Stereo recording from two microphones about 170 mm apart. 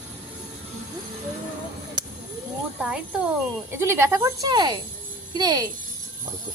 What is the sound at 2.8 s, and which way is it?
Speech, 5° right (ahead or behind).